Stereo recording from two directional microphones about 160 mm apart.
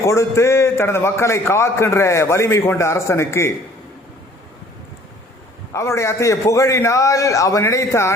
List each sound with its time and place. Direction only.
0.0 s a man's voice: 15° left (ahead or behind)
5.7 s a man's voice: 15° left (ahead or behind)